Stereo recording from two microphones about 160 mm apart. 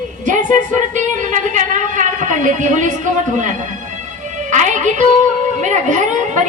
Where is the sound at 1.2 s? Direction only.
50° right (ahead or behind).